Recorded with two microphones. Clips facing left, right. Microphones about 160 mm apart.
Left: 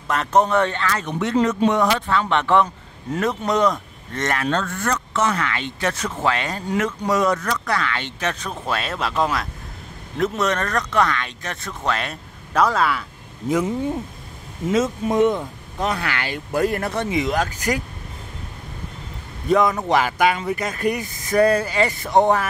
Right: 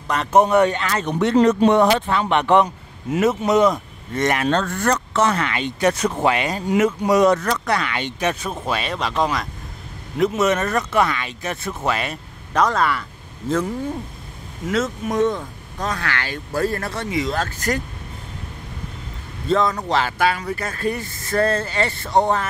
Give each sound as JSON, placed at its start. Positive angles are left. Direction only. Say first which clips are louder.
{"t": 0.1, "sound": "speech", "louder": "right 1 dB", "side_deg": 0}
{"t": 0.4, "sound": "speech", "louder": "right 3 dB", "side_deg": -10}
{"t": 1.0, "sound": "speech", "louder": "right 6 dB", "side_deg": -35}
{"t": 3.1, "sound": "speech", "louder": "right 4 dB", "side_deg": -5}
{"t": 4.1, "sound": "speech", "louder": "right 4 dB", "side_deg": -15}
{"t": 4.5, "sound": "speech", "louder": "right 3 dB", "side_deg": -35}
{"t": 5.4, "sound": "speech", "louder": "right 4 dB", "side_deg": -15}
{"t": 7.2, "sound": "speech", "louder": "right 4 dB", "side_deg": -35}
{"t": 7.7, "sound": "speech", "louder": "right 2 dB", "side_deg": -15}
{"t": 13.5, "sound": "speech", "louder": "left 1 dB", "side_deg": 15}
{"t": 19.4, "sound": "speech", "louder": "left 2 dB", "side_deg": 15}